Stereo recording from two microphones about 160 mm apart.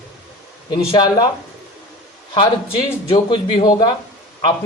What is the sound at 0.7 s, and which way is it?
Speech, 25° left (ahead or behind).